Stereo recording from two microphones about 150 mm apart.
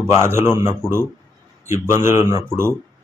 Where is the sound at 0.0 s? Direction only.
15° right (ahead or behind).